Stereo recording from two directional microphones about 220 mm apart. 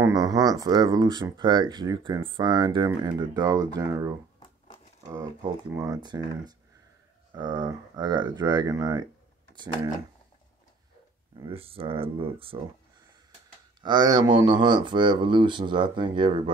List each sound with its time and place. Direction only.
0.0 s speech: 15° right (ahead or behind)
5.7 s speech: 15° right (ahead or behind)
11.3 s speech: 25° right (ahead or behind)
13.7 s speech: 20° right (ahead or behind)